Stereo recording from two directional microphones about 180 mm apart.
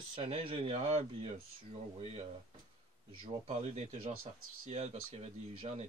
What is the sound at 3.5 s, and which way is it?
Speech, 35° right (ahead or behind).